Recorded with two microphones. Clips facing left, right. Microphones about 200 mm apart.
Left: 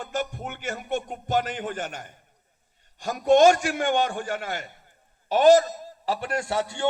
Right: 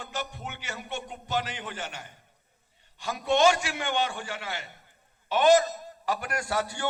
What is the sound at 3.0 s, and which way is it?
A man's voice, 45° left (ahead or behind).